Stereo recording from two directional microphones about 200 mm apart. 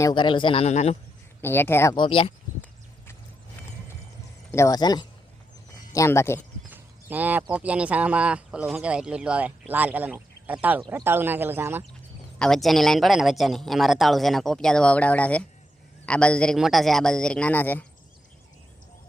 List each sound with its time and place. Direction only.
0.0 s a man's voice: 25° left (ahead or behind)
1.4 s speech: 10° left (ahead or behind); by 2.3 s 25° left (ahead or behind)
4.5 s a man's voice: 15° left (ahead or behind)
6.7 s a sound: 10° right (ahead or behind)
7.5 s speech: 5° right (ahead or behind)
12.4 s speech: centre (ahead or behind)